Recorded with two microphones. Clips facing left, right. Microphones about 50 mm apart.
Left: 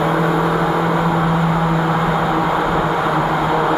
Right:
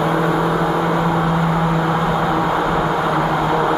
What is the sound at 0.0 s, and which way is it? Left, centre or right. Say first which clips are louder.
Vehicle: left 1 dB; centre.